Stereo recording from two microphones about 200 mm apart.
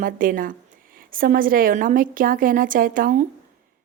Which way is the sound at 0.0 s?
45° right (ahead or behind).